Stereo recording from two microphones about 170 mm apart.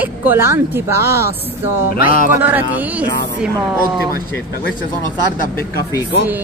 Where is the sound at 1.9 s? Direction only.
55° left (ahead or behind).